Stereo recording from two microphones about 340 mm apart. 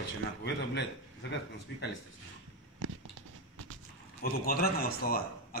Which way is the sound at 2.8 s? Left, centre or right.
Right.